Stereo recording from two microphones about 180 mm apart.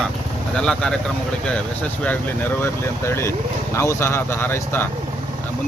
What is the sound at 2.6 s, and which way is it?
Speech, 15° left (ahead or behind).